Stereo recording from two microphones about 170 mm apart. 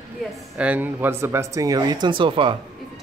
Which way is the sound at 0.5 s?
10° right (ahead or behind).